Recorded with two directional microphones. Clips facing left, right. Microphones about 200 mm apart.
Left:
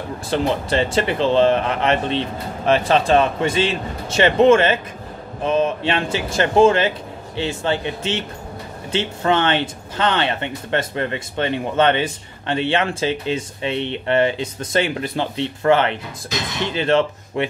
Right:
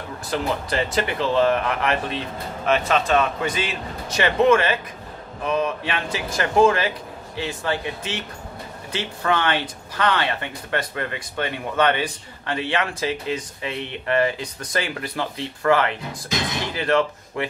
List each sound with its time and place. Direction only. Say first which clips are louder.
0.3 s speech: left 5 dB; 25° left (ahead or behind)